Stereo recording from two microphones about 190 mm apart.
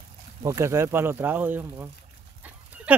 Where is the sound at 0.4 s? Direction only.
15° right (ahead or behind).